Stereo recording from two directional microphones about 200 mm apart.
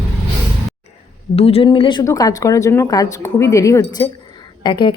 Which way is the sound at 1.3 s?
30° left (ahead or behind).